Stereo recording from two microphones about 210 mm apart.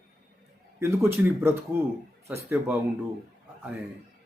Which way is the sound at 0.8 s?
10° right (ahead or behind).